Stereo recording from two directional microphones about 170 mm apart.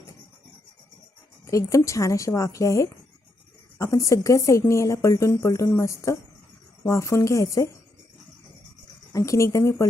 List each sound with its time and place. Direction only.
1.5 s speech: 20° left (ahead or behind)
9.1 s speech: 20° left (ahead or behind)